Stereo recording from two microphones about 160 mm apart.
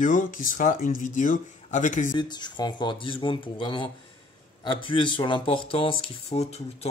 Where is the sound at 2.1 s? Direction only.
25° left (ahead or behind).